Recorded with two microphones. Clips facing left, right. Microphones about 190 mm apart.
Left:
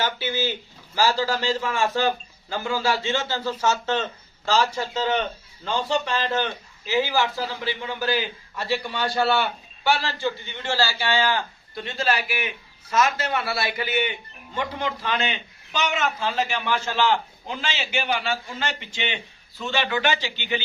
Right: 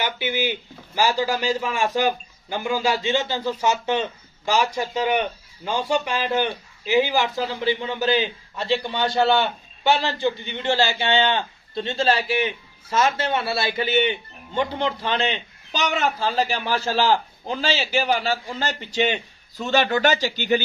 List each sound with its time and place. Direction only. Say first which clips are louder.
0.0 s a man's voice: right 1 dB; 15° right (ahead or behind); by 20.6 s 40° right (ahead or behind)